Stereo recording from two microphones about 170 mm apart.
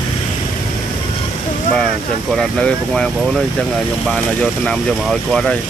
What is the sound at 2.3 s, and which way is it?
Speech, 5° left (ahead or behind).